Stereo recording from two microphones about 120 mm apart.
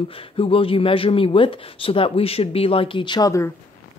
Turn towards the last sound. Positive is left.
turn(degrees=25)  # may be behind; listen again after turning